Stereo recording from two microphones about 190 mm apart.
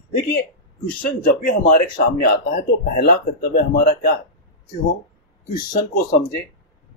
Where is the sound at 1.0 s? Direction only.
45° left (ahead or behind).